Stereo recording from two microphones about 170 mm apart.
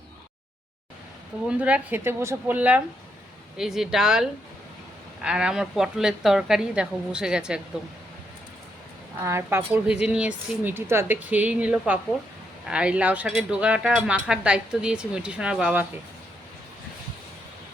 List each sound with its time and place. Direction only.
1.5 s speech: 10° right (ahead or behind)
9.2 s speech: 15° right (ahead or behind)